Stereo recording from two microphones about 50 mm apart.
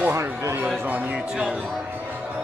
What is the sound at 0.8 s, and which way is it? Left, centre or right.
Speech, right.